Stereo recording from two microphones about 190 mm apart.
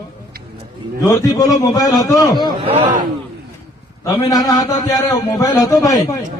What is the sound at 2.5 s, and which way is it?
Speech, 30° right (ahead or behind).